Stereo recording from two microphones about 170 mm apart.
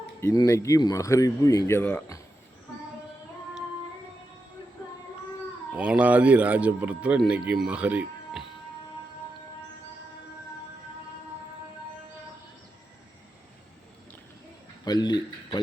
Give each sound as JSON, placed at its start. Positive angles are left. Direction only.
{"t": 0.2, "sound": "speech", "side_deg": 20}
{"t": 5.7, "sound": "speech", "side_deg": -10}
{"t": 14.8, "sound": "speech", "side_deg": 25}